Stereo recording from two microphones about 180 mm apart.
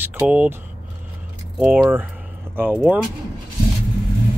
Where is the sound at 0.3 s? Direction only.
5° right (ahead or behind).